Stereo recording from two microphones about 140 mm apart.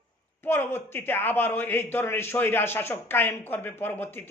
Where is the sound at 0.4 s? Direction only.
15° left (ahead or behind).